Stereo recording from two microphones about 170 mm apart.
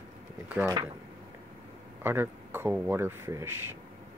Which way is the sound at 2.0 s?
10° right (ahead or behind).